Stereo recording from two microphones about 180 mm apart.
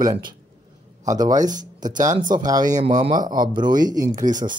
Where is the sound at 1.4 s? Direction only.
45° right (ahead or behind).